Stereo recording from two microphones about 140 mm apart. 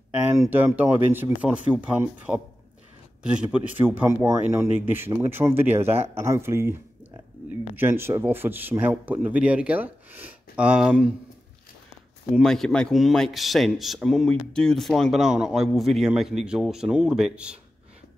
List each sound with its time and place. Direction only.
0.1 s a sound: 10° right (ahead or behind)
0.4 s speech: 20° right (ahead or behind)
3.5 s speech: 10° right (ahead or behind)
12.4 s speech: centre (ahead or behind)